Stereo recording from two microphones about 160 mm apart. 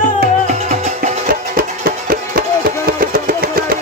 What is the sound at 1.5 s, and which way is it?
Music, 65° right (ahead or behind).